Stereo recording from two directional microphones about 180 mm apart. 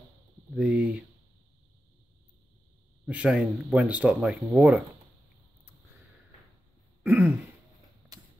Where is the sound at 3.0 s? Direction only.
5° right (ahead or behind).